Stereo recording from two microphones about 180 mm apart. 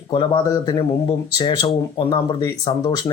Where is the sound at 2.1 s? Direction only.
25° left (ahead or behind).